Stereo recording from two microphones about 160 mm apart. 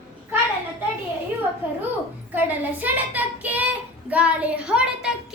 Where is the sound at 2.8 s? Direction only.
10° right (ahead or behind).